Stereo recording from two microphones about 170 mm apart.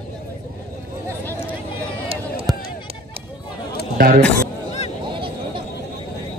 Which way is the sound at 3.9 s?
60° right (ahead or behind).